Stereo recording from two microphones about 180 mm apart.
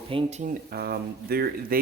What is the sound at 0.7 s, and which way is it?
Speech, 60° right (ahead or behind).